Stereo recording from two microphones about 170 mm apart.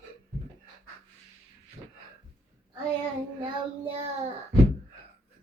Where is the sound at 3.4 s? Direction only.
30° right (ahead or behind).